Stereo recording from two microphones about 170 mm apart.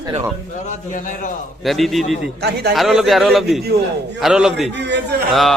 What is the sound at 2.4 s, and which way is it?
Speech, 70° right (ahead or behind).